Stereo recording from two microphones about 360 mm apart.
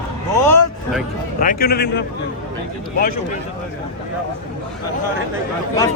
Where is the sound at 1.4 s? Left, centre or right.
Left.